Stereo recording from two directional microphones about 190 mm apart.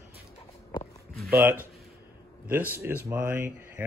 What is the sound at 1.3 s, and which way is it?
Speech, 10° right (ahead or behind).